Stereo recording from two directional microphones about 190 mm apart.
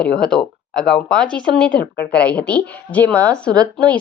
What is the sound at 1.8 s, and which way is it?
Speech, 55° left (ahead or behind).